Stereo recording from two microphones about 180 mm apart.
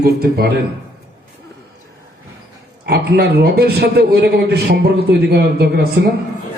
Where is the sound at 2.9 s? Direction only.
60° right (ahead or behind).